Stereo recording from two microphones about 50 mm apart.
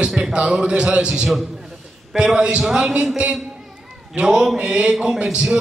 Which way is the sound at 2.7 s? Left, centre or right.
Centre.